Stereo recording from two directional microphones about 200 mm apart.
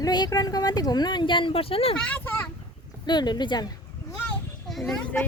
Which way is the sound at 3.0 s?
20° left (ahead or behind).